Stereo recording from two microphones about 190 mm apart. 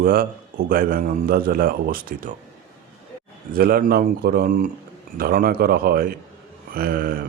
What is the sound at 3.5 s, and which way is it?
Speech, 50° right (ahead or behind).